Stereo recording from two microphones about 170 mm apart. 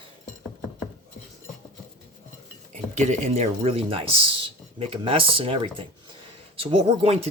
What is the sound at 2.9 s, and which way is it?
Speech, 45° right (ahead or behind).